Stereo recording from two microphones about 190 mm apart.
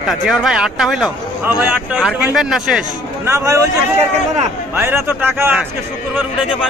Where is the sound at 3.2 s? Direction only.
15° right (ahead or behind).